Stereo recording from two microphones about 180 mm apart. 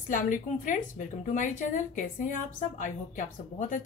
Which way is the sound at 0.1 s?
45° left (ahead or behind).